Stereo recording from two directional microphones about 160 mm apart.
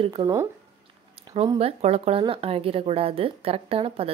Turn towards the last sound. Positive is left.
turn(degrees=-35)  # may be behind; listen again after turning